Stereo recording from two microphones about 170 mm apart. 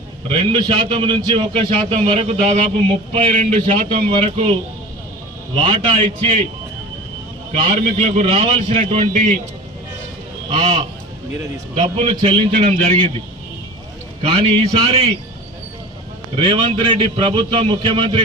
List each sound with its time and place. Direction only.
0.3 s a man's voice: 30° right (ahead or behind)
5.6 s speech: 35° right (ahead or behind)
7.8 s speech: 35° right (ahead or behind)
10.5 s speech: 40° right (ahead or behind)
14.2 s speech: 35° right (ahead or behind)
16.4 s a man's voice: 30° right (ahead or behind)